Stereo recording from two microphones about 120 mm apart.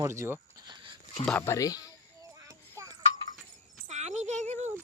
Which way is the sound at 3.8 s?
75° right (ahead or behind).